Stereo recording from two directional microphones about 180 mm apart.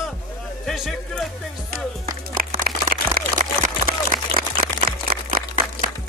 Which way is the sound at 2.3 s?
50° right (ahead or behind).